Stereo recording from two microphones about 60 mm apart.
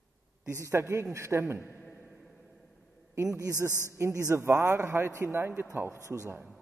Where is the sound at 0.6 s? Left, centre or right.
Right.